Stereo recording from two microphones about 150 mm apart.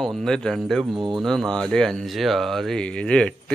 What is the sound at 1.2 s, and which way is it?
Speech, centre (ahead or behind).